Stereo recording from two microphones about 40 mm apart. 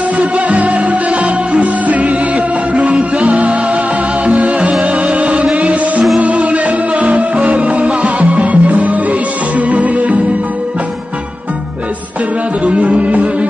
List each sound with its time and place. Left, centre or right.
0.2 s music: right
12.6 s music: right